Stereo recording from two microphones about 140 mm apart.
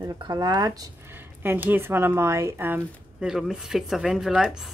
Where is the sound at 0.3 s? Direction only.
30° right (ahead or behind).